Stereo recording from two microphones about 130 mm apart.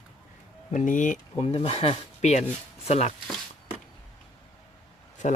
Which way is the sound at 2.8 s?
55° left (ahead or behind).